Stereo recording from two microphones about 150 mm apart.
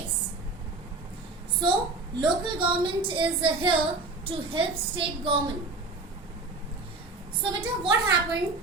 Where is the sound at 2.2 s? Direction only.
35° right (ahead or behind).